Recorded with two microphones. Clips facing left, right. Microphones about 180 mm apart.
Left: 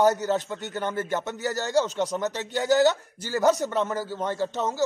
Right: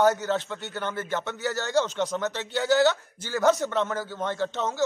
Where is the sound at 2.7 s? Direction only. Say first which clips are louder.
Left 1 dB; 40° left (ahead or behind).